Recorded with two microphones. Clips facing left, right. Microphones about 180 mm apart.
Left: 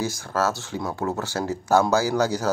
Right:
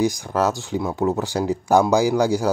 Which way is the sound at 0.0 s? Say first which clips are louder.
Right 5 dB; 15° right (ahead or behind).